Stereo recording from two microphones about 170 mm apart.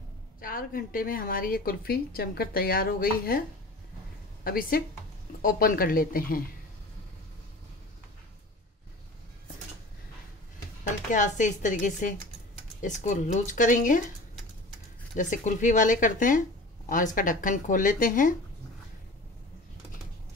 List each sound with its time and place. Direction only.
0.4 s a woman's voice: 55° left (ahead or behind)
4.5 s a woman's voice: 60° left (ahead or behind)
10.8 s speech: 50° left (ahead or behind)
15.1 s speech: 50° left (ahead or behind)